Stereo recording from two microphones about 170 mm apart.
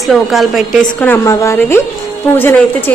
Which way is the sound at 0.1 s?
Centre (ahead or behind).